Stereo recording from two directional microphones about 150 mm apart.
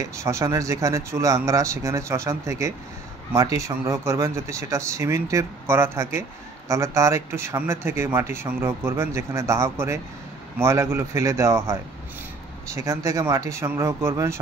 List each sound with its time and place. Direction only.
0.0 s speech: 20° right (ahead or behind)